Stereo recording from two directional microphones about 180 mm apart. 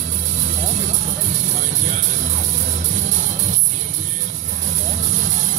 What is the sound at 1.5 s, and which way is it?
Music, 40° right (ahead or behind).